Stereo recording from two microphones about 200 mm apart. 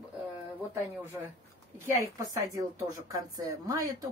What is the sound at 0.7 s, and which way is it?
Speech, 10° right (ahead or behind).